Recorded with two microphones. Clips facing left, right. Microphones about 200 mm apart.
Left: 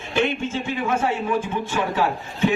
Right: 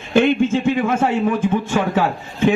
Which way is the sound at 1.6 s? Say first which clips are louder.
Right 6 dB; 50° right (ahead or behind).